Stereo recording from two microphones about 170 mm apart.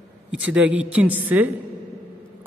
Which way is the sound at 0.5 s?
10° right (ahead or behind).